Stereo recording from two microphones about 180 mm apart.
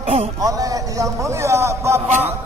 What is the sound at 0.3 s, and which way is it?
A man's voice, 20° right (ahead or behind).